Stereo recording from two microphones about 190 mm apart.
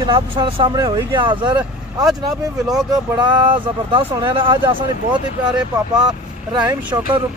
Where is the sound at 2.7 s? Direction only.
20° right (ahead or behind).